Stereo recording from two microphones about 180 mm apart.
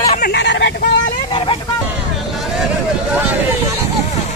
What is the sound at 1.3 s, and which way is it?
Vehicle, 30° left (ahead or behind).